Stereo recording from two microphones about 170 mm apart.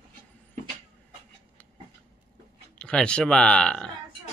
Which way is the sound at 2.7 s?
5° left (ahead or behind).